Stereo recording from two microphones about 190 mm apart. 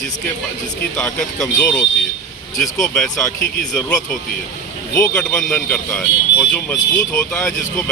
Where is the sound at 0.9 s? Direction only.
5° left (ahead or behind).